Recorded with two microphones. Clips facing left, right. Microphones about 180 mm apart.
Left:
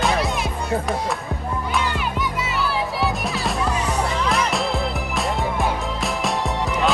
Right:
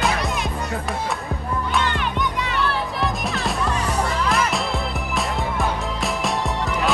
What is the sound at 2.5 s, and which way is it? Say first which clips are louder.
Music: left 2 dB; 5° left (ahead or behind).